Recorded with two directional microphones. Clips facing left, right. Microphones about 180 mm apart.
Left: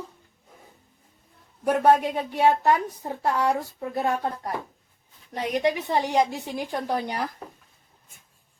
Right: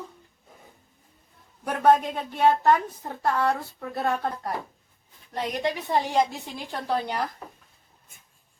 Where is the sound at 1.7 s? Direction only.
10° left (ahead or behind).